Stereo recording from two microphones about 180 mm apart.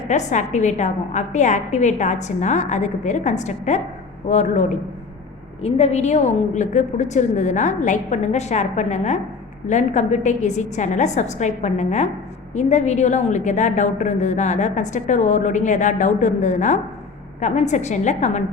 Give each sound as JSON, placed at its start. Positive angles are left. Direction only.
{"t": 0.1, "sound": "a woman's voice", "side_deg": 40}